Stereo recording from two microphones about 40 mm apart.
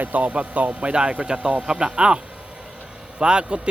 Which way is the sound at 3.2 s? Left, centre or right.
Right.